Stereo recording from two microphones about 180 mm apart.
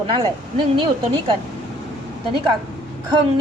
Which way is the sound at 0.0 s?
25° right (ahead or behind).